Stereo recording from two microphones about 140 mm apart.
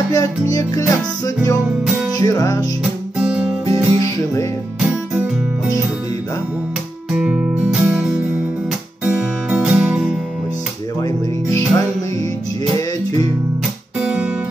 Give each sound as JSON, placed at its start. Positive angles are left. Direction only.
{"t": 0.1, "sound": "music", "side_deg": 25}
{"t": 2.8, "sound": "music", "side_deg": -5}
{"t": 3.6, "sound": "music", "side_deg": 25}
{"t": 7.1, "sound": "music", "side_deg": -10}
{"t": 11.0, "sound": "music", "side_deg": 25}
{"t": 13.9, "sound": "guitar", "side_deg": -5}